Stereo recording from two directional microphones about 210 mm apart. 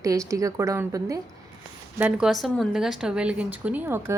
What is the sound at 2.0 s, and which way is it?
Speech, 5° right (ahead or behind).